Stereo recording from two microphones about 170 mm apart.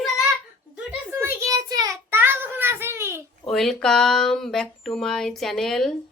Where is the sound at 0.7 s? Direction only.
10° right (ahead or behind).